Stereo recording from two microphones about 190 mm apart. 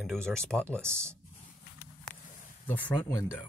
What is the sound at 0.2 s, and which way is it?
Speech, 5° left (ahead or behind).